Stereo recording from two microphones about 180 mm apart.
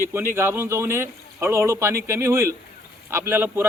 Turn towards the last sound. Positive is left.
turn(degrees=-10)  # may be behind; listen again after turning